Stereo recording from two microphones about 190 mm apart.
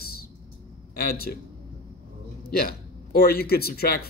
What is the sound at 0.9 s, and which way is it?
Speech, 55° left (ahead or behind).